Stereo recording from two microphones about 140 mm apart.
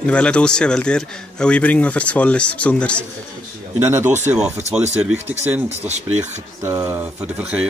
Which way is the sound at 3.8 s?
15° right (ahead or behind).